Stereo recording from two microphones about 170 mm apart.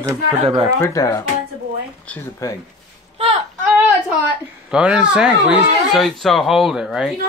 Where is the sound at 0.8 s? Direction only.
20° left (ahead or behind).